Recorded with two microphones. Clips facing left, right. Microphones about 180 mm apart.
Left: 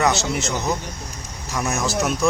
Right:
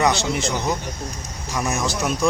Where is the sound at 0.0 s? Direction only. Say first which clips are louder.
Right 1 dB; centre (ahead or behind).